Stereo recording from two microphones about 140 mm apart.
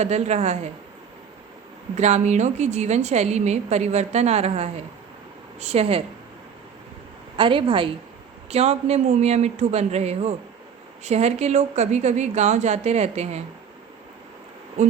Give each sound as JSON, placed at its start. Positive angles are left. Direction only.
{"t": 0.0, "sound": "a woman's voice", "side_deg": -55}
{"t": 2.0, "sound": "a woman's voice", "side_deg": -55}
{"t": 7.3, "sound": "a woman's voice", "side_deg": -40}
{"t": 8.4, "sound": "a woman's voice", "side_deg": -50}